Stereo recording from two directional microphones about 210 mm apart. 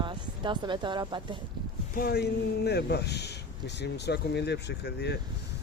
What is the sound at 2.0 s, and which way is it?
Speech, 50° left (ahead or behind).